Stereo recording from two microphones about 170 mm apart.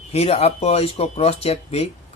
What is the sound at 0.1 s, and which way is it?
Speech, 40° left (ahead or behind).